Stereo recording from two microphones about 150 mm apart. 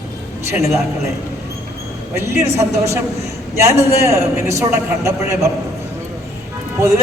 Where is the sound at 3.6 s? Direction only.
20° right (ahead or behind).